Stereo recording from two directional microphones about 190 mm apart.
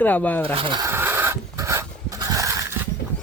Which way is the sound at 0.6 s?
25° right (ahead or behind).